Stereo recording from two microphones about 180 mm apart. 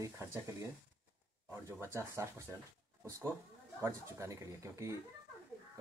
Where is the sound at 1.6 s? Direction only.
15° right (ahead or behind).